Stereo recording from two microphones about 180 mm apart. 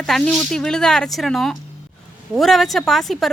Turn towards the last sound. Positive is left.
turn(degrees=0)  # may be behind; listen again after turning